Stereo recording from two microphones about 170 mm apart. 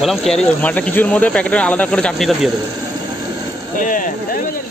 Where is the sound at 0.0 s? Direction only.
Centre (ahead or behind).